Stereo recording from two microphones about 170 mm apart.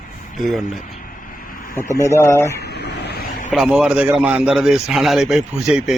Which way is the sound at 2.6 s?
80° left.